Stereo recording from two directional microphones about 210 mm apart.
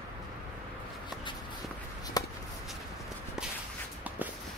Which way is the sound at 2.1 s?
15° left (ahead or behind).